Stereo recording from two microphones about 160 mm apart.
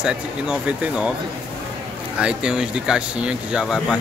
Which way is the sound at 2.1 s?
5° right (ahead or behind).